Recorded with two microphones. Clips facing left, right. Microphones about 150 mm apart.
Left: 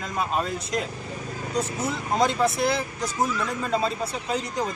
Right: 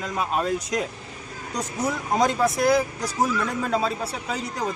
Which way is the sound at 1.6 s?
15° right (ahead or behind).